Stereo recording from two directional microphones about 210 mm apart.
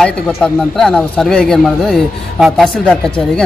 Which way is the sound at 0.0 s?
5° left (ahead or behind).